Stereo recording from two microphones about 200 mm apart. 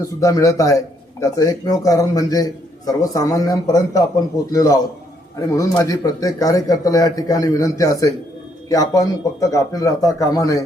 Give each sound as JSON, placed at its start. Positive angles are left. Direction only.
{"t": 0.0, "sound": "a man's voice", "side_deg": 15}